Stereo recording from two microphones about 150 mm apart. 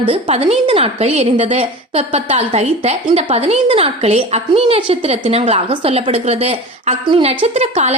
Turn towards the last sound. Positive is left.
turn(degrees=-45)  # may be behind; listen again after turning